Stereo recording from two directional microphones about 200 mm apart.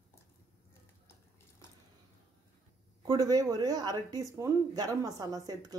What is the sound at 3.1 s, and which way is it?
Speech, 20° right (ahead or behind).